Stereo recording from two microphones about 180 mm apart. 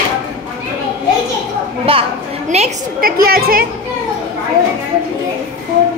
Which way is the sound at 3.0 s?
55° right (ahead or behind).